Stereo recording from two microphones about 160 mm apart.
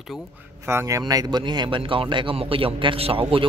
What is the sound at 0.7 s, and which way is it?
Speech, 20° right (ahead or behind).